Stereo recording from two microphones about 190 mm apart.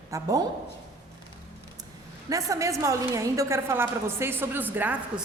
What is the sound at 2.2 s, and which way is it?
A woman's voice, 15° right (ahead or behind).